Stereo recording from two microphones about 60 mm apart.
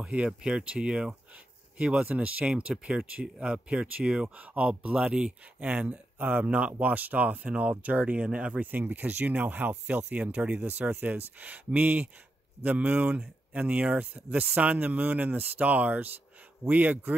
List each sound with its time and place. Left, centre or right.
0.0 s speech: centre